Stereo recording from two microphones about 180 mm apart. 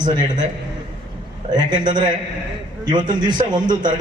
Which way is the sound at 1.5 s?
25° right (ahead or behind).